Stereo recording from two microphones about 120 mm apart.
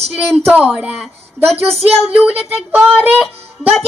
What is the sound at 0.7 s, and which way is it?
Speech, 5° right (ahead or behind).